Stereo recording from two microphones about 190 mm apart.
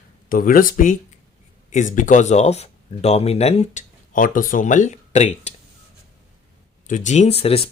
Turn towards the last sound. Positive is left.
turn(degrees=30)  # may be behind; listen again after turning